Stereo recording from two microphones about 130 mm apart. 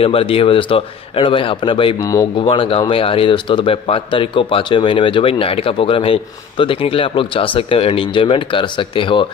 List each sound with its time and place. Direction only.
0.0 s speech: 45° left (ahead or behind)